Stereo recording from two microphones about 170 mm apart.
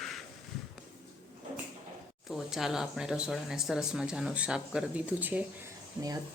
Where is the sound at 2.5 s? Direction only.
Centre (ahead or behind).